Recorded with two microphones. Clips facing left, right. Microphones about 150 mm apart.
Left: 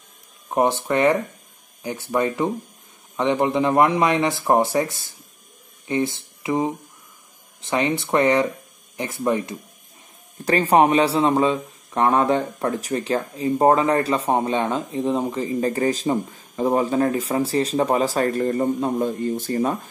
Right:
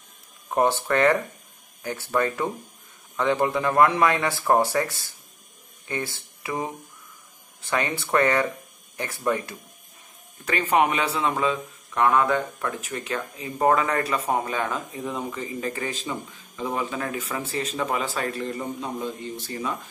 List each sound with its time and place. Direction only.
0.5 s speech: 15° left (ahead or behind)
5.9 s speech: 20° left (ahead or behind)
10.4 s a man's voice: 35° left (ahead or behind)